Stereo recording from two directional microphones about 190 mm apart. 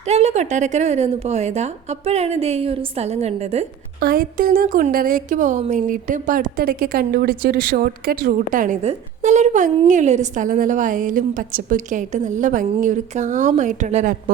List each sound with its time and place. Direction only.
0.0 s a woman's voice: 35° right (ahead or behind)
4.0 s speech: 50° right (ahead or behind)